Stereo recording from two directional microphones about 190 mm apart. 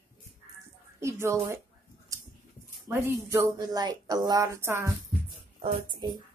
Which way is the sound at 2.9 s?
15° right (ahead or behind).